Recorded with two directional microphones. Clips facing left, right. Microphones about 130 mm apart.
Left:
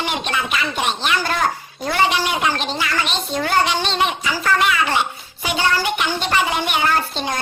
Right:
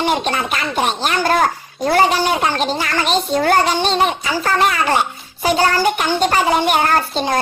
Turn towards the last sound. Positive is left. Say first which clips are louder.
# right 4 dB
turn(degrees=-45)  # may be behind; listen again after turning